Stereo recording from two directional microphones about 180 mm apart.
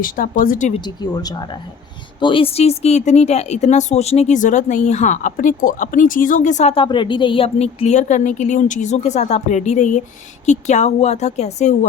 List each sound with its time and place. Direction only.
0.0 s speech: 50° left (ahead or behind)
0.7 s a woman's voice: 20° left (ahead or behind); by 11.9 s 40° left (ahead or behind)